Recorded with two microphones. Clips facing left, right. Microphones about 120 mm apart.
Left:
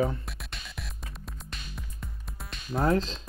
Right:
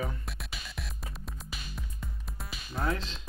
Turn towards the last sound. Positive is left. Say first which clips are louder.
# left 7 dB
turn(degrees=35)  # may be behind; listen again after turning